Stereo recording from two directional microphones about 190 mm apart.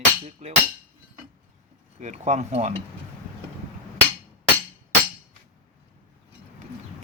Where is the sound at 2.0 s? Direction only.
40° right (ahead or behind).